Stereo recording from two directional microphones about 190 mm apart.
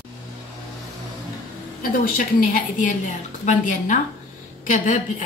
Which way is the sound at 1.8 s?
50° left (ahead or behind).